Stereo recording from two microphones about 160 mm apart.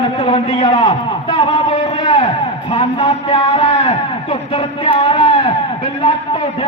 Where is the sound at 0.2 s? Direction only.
35° left (ahead or behind).